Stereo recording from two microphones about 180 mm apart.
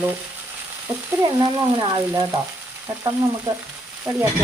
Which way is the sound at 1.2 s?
25° right (ahead or behind).